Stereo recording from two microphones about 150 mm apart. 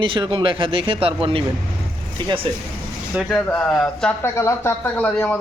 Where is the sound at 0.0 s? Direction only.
35° right (ahead or behind).